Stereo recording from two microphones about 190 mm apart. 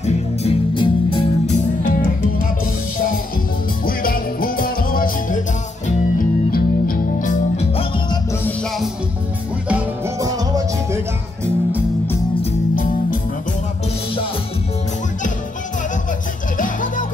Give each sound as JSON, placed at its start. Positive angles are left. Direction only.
{"t": 0.0, "sound": "music", "side_deg": 30}
{"t": 1.8, "sound": "music", "side_deg": 45}
{"t": 3.8, "sound": "music", "side_deg": 50}
{"t": 8.1, "sound": "music", "side_deg": 15}
{"t": 9.7, "sound": "music", "side_deg": -5}
{"t": 10.2, "sound": "music", "side_deg": -20}
{"t": 16.5, "sound": "music", "side_deg": 45}